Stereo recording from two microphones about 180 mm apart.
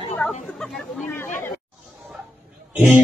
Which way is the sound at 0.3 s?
5° left (ahead or behind).